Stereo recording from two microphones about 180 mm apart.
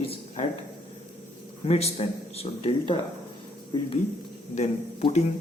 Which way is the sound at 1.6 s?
35° left (ahead or behind).